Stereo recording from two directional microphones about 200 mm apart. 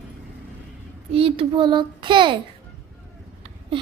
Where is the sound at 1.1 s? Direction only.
25° right (ahead or behind).